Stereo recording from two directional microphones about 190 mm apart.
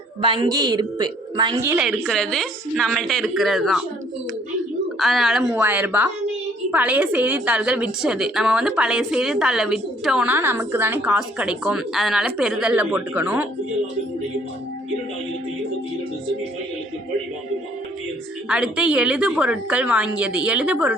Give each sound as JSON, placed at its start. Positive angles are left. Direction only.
{"t": 0.2, "sound": "a woman's voice", "side_deg": -25}
{"t": 1.7, "sound": "a woman's voice", "side_deg": 0}
{"t": 4.9, "sound": "a woman's voice", "side_deg": 0}
{"t": 18.4, "sound": "a woman's voice", "side_deg": -5}